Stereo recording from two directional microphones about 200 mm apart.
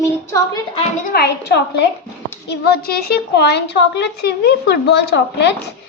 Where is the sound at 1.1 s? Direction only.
55° left (ahead or behind).